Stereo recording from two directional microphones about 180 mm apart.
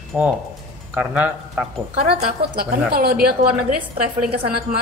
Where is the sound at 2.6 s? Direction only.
55° right (ahead or behind).